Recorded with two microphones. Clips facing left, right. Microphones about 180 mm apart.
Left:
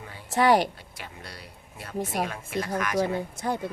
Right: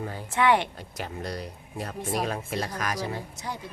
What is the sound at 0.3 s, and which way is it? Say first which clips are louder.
Speech: left 2 dB; 35° left (ahead or behind).